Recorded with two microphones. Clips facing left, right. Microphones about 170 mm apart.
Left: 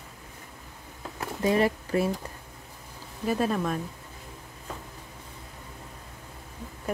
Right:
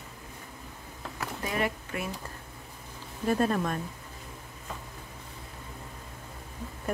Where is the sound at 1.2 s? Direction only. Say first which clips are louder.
Left 7 dB; 30° left (ahead or behind).